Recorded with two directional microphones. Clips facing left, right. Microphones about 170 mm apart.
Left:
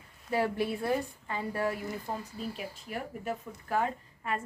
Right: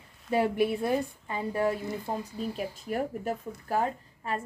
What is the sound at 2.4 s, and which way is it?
A woman's voice, 45° right (ahead or behind).